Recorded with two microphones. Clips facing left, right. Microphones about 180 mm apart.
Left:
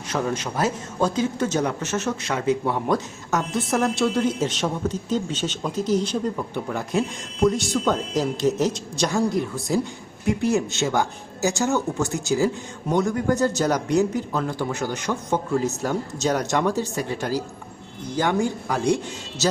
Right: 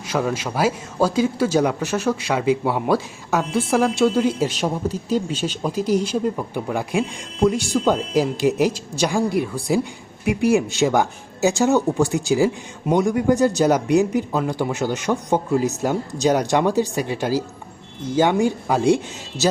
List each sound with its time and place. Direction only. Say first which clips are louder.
0.1 s a man's voice: right 3 dB; 10° right (ahead or behind)
10.2 s a man's voice: right 4 dB; 15° right (ahead or behind)